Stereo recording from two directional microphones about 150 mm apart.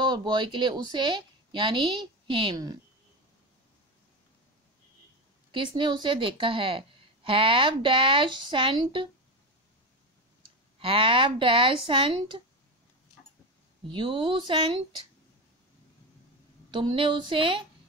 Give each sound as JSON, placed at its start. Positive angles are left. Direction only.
{"t": 0.0, "sound": "a woman's voice", "side_deg": -30}
{"t": 5.5, "sound": "a woman's voice", "side_deg": -35}
{"t": 10.8, "sound": "a woman's voice", "side_deg": -35}
{"t": 13.8, "sound": "a woman's voice", "side_deg": -35}
{"t": 16.7, "sound": "a woman's voice", "side_deg": -35}